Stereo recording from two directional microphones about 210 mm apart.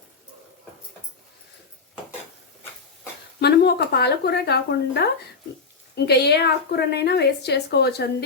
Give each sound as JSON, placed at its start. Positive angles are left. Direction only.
{"t": 3.4, "sound": "a woman's voice", "side_deg": 50}
{"t": 6.1, "sound": "a woman's voice", "side_deg": 50}